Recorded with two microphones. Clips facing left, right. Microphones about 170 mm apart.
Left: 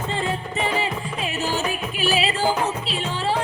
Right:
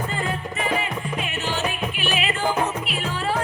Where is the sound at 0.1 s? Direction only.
30° left (ahead or behind).